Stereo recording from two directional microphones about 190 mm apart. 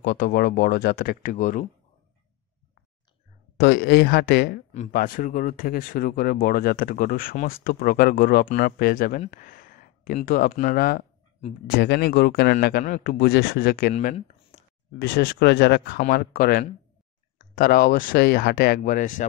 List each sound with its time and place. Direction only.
0.0 s speech: 50° left (ahead or behind)
3.5 s a man's voice: 65° left (ahead or behind)
4.7 s a man's voice: 40° left (ahead or behind)
13.9 s speech: 35° left (ahead or behind)
15.0 s a man's voice: 60° left (ahead or behind); by 19.2 s 40° left (ahead or behind)